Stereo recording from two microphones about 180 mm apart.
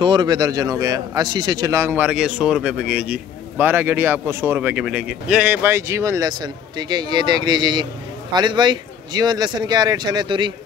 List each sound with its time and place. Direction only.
0.0 s a man's voice: 25° right (ahead or behind)